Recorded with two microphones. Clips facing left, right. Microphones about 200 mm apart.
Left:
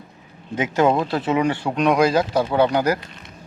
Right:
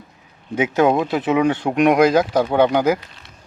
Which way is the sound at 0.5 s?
15° right (ahead or behind).